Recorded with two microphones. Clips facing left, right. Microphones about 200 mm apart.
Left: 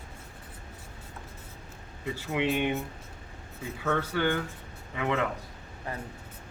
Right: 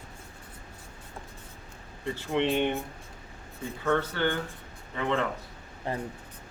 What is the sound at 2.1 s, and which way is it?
Speech, 10° left (ahead or behind).